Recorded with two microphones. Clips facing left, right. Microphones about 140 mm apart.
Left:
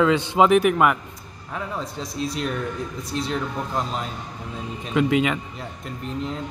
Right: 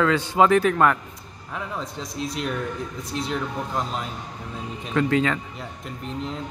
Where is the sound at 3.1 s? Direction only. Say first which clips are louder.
Left 1 dB; centre (ahead or behind).